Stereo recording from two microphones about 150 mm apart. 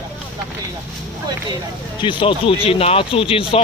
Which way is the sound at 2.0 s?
30° left (ahead or behind).